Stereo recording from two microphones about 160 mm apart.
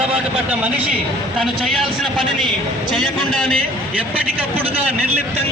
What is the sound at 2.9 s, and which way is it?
Speech, 5° left (ahead or behind).